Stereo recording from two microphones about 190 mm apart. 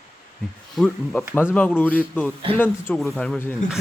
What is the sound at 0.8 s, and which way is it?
A man's voice, 10° left (ahead or behind).